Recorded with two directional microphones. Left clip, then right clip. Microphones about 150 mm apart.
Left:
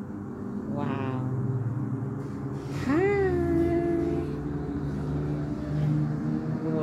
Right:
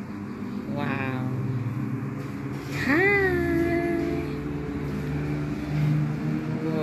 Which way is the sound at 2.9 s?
10° left (ahead or behind).